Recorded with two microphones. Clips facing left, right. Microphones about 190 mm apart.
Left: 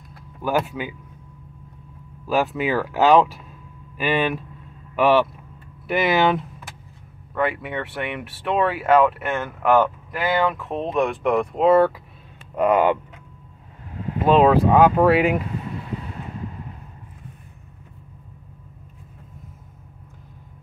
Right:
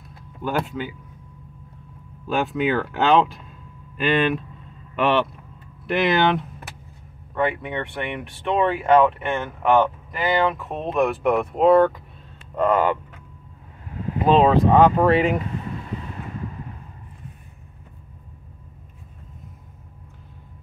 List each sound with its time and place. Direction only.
0.4 s speech: 10° left (ahead or behind)
2.2 s speech: 5° left (ahead or behind)
12.5 s speech: 15° left (ahead or behind)
14.2 s speech: centre (ahead or behind)